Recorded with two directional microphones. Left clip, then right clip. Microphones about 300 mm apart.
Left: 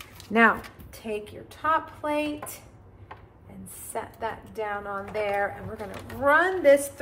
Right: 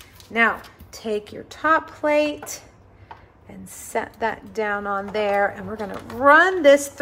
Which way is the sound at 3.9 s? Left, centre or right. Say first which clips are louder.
Right 8 dB; right.